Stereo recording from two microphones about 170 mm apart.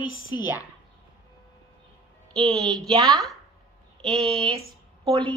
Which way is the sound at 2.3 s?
Centre (ahead or behind).